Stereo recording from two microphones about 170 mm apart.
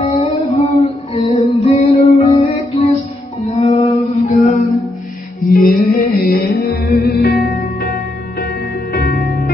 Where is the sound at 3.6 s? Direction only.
40° left (ahead or behind).